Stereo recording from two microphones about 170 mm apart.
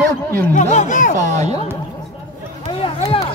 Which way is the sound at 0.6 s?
45° left (ahead or behind).